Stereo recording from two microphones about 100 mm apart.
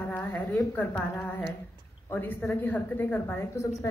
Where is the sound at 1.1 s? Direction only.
30° left (ahead or behind).